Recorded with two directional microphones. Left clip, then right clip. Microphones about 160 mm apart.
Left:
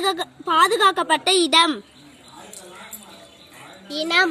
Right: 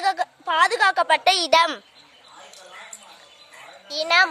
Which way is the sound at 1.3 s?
40° right (ahead or behind).